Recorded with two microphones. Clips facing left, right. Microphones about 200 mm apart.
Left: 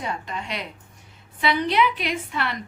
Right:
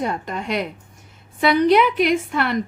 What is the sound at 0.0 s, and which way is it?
A woman's voice, 50° right (ahead or behind).